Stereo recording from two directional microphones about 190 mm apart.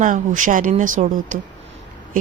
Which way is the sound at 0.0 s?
45° right (ahead or behind).